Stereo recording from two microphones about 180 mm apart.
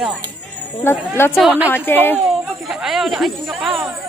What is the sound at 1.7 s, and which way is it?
Speech, 10° left (ahead or behind).